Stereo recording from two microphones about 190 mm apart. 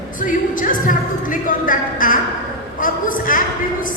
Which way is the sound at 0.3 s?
45° left (ahead or behind).